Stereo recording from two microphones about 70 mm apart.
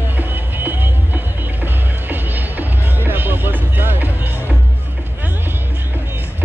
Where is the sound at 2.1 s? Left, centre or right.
Right.